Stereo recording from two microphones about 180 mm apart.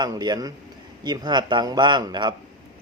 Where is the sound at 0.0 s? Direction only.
25° right (ahead or behind).